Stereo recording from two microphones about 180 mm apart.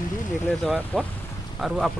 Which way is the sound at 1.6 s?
Centre (ahead or behind).